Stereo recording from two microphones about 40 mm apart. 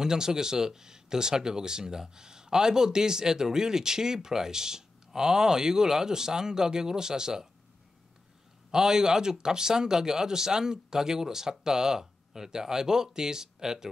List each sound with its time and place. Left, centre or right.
0.0 s speech: centre
8.7 s speech: centre